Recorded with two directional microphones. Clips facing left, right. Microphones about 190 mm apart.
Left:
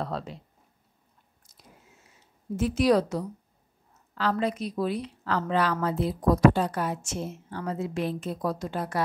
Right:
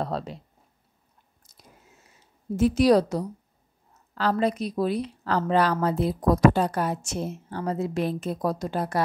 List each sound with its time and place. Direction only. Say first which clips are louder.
0.0 s a woman's voice: right 3 dB; 35° right (ahead or behind)
2.5 s a woman's voice: right 4 dB; 35° right (ahead or behind)